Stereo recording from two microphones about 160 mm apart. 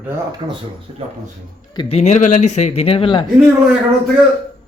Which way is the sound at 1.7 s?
30° left (ahead or behind).